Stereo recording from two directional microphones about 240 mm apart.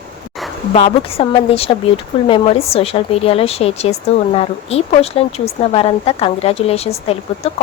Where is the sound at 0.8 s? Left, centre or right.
Left.